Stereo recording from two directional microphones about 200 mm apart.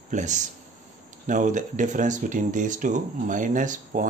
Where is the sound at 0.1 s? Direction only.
35° right (ahead or behind).